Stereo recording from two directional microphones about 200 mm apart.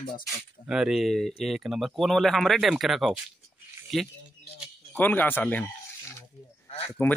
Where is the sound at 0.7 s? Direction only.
5° right (ahead or behind).